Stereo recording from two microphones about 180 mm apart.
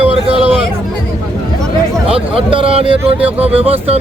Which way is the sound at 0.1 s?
30° right (ahead or behind).